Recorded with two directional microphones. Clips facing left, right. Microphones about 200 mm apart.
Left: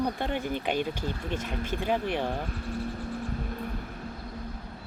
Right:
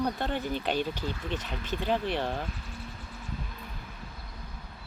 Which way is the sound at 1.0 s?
50° left (ahead or behind).